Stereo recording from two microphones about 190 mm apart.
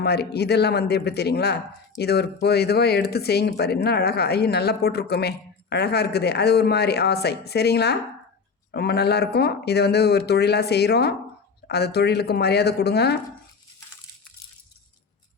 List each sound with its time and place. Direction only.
0.0 s speech: 60° left (ahead or behind)